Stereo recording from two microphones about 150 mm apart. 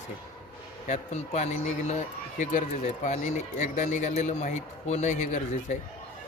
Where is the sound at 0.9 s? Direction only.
50° left (ahead or behind).